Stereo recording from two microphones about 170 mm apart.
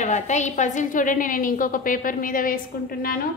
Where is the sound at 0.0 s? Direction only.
45° left (ahead or behind).